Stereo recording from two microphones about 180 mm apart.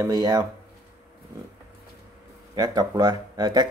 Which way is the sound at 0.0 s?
20° right (ahead or behind).